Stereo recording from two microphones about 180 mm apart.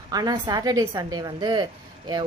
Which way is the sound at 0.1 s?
20° right (ahead or behind).